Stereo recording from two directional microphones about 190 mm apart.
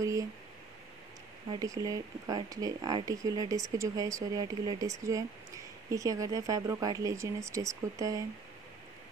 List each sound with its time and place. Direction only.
0.0 s speech: 15° right (ahead or behind)
1.5 s speech: 20° right (ahead or behind)